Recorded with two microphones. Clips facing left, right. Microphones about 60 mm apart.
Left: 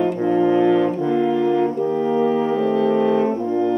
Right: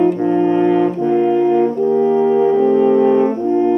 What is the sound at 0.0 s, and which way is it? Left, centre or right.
Brass instrument, centre.